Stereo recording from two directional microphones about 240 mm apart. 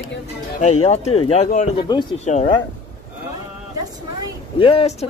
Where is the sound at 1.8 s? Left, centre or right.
Centre.